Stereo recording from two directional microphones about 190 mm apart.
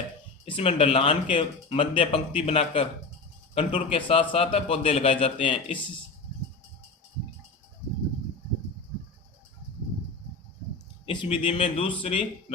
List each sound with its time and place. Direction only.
0.4 s a man's voice: 30° left (ahead or behind)
11.0 s speech: 25° left (ahead or behind)